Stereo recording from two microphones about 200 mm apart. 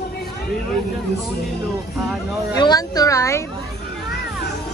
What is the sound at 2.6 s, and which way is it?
Speech, 20° left (ahead or behind).